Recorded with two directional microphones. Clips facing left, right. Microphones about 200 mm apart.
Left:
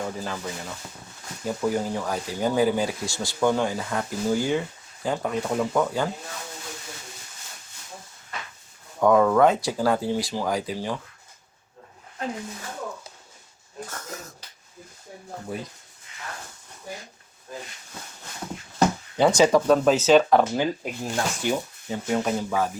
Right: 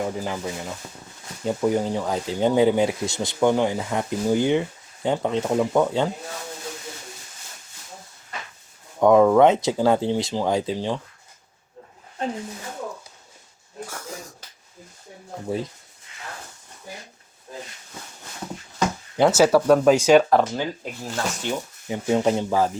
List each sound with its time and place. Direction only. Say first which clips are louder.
0.0 s speech: right 4 dB; 15° right (ahead or behind)
9.0 s speech: right 3 dB; 20° right (ahead or behind)
13.8 s a sound: right 2 dB; 10° right (ahead or behind)
19.1 s speech: right 3 dB; 10° right (ahead or behind)
20.3 s speech: even; centre (ahead or behind)
20.6 s speech: left 3 dB; 15° left (ahead or behind)
21.8 s speech: right 5 dB; 15° right (ahead or behind)